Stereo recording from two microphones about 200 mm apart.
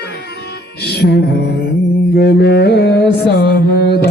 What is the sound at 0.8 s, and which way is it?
Music, 55° left (ahead or behind).